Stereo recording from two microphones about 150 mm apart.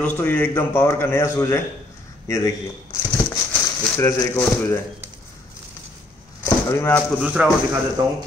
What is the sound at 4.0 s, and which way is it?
Speech, 15° left (ahead or behind).